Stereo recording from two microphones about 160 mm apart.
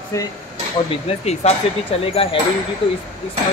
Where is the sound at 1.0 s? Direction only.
40° left (ahead or behind).